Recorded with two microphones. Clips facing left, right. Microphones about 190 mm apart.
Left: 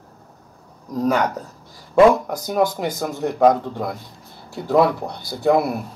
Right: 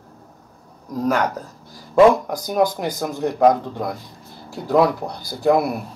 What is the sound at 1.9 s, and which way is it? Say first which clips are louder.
Speech: even; centre (ahead or behind).